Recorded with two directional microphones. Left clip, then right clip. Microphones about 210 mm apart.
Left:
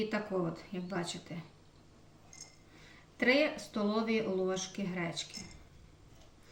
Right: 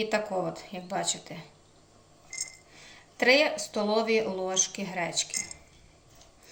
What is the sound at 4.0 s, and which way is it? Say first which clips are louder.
Speech: right 8 dB; 35° right (ahead or behind).